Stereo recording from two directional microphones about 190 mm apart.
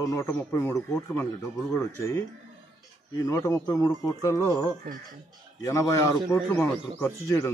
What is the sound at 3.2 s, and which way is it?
A man's voice, 15° left (ahead or behind).